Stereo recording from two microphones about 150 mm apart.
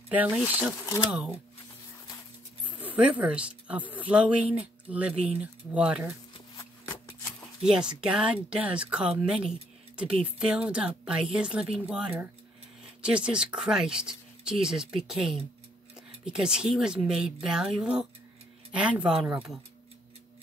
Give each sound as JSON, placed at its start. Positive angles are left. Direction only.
{"t": 0.1, "sound": "speech", "side_deg": -10}
{"t": 2.8, "sound": "speech", "side_deg": -10}
{"t": 6.5, "sound": "a sound", "side_deg": 25}
{"t": 7.3, "sound": "speech", "side_deg": -5}